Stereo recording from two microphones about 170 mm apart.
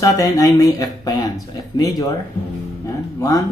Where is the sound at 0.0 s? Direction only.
20° left (ahead or behind).